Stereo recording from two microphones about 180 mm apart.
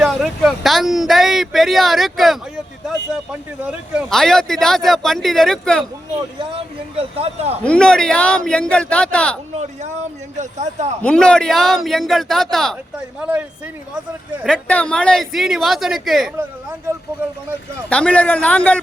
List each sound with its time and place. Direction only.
0.0 s speech: centre (ahead or behind)
3.7 s speech: centre (ahead or behind)
6.6 s speech: 30° right (ahead or behind)
7.6 s speech: 5° left (ahead or behind)
10.3 s speech: 40° right (ahead or behind)
11.0 s speech: 5° left (ahead or behind)
14.5 s speech: 5° left (ahead or behind)
17.8 s a man's voice: 5° left (ahead or behind)